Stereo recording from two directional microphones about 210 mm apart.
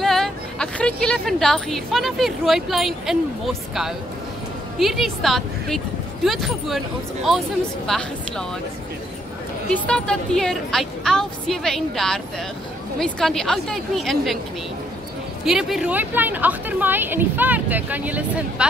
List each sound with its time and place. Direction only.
0.0 s speech: centre (ahead or behind)
4.7 s a woman's voice: centre (ahead or behind)
9.7 s a woman's voice: 5° left (ahead or behind)
15.4 s a woman's voice: centre (ahead or behind)